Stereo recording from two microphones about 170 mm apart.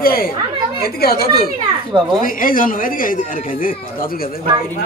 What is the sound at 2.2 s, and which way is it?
Speech, 55° left (ahead or behind).